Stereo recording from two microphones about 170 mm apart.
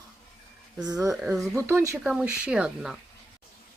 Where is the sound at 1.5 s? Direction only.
15° right (ahead or behind).